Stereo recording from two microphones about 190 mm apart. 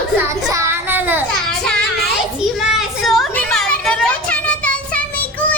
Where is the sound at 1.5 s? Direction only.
5° left (ahead or behind).